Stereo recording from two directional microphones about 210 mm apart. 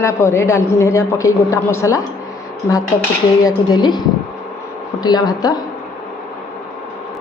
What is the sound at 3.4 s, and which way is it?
Speech, 20° left (ahead or behind).